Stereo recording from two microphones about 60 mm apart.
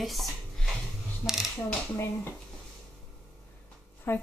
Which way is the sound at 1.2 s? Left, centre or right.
Left.